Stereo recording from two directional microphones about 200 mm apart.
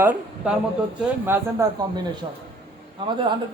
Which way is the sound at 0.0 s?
10° right (ahead or behind).